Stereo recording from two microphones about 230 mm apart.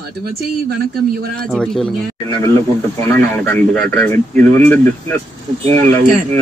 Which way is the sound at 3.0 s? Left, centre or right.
Centre.